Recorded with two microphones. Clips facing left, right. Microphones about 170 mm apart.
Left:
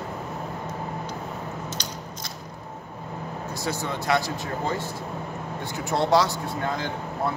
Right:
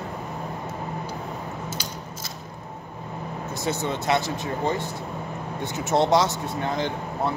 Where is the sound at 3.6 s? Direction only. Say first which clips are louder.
Right 3 dB; 20° right (ahead or behind).